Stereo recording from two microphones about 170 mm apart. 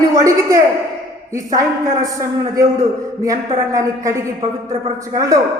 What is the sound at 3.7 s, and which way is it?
A man's voice, 20° right (ahead or behind).